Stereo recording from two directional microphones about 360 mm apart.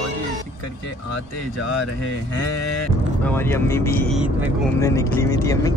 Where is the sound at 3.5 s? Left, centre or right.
Centre.